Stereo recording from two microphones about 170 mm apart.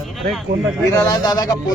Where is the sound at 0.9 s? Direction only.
20° left (ahead or behind).